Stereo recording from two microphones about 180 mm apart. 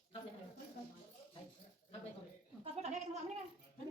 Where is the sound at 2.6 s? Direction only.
35° right (ahead or behind).